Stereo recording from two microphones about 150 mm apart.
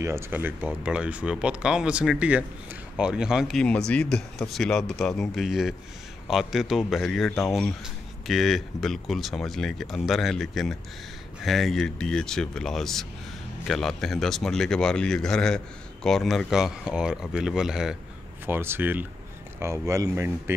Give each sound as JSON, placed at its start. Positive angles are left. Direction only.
{"t": 0.0, "sound": "speech", "side_deg": -15}
{"t": 18.4, "sound": "speech", "side_deg": -15}